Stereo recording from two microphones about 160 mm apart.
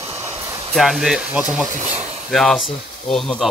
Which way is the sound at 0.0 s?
40° right (ahead or behind).